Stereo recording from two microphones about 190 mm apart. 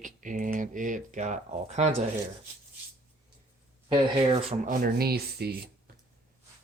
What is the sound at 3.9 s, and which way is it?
Speech, 30° right (ahead or behind).